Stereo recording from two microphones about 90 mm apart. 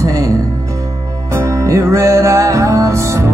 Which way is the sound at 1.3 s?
35° right (ahead or behind).